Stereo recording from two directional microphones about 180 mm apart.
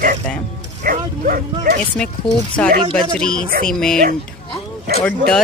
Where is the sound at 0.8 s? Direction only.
50° right (ahead or behind).